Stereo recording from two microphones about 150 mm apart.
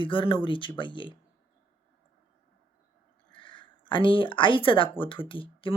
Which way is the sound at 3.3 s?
35° left (ahead or behind).